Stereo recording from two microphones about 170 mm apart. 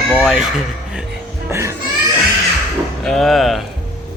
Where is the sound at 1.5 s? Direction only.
15° right (ahead or behind).